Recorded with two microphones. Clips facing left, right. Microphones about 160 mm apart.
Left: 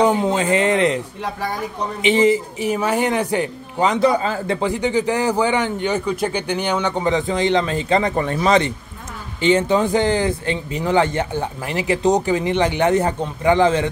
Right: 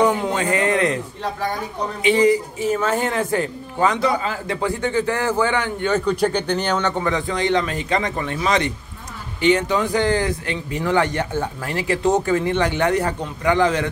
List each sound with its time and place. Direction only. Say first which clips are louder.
0.0 s a sound: left 2 dB; 20° left (ahead or behind)
2.0 s a man's voice: even; 20° left (ahead or behind)
4.2 s a man's voice: left 3 dB; 30° left (ahead or behind); by 7.1 s 10° left (ahead or behind)
7.1 s speech: left 5 dB; 25° left (ahead or behind)